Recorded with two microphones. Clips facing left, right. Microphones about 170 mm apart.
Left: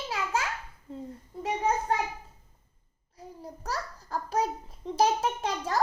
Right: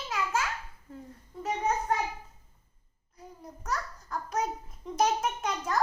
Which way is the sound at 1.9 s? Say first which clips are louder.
Left 1 dB; 30° left (ahead or behind).